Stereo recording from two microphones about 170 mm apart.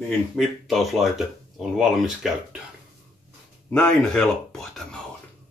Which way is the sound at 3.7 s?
5° left (ahead or behind).